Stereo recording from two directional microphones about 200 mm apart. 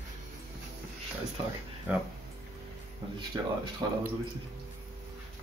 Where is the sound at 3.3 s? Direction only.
15° right (ahead or behind).